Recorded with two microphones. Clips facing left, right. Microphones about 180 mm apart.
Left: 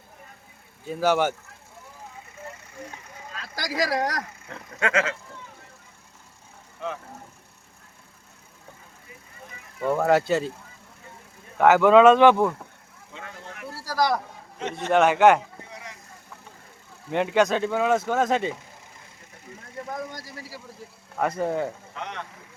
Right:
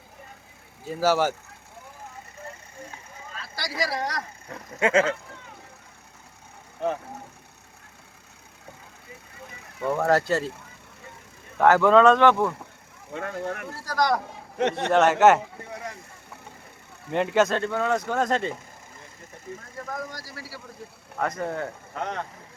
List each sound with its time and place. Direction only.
0.9 s speech: 5° right (ahead or behind)
3.8 s speech: 90° left
4.4 s speech: 20° right (ahead or behind)
9.9 s speech: centre (ahead or behind)
11.5 s speech: 5° left (ahead or behind)
13.1 s speech: 55° right (ahead or behind)
13.7 s speech: 10° left (ahead or behind)
14.6 s a man's voice: 70° right (ahead or behind)
14.9 s speech: centre (ahead or behind)
17.1 s speech: centre (ahead or behind)
19.9 s speech: 25° left (ahead or behind)
21.2 s speech: 10° left (ahead or behind)
21.9 s speech: 45° right (ahead or behind)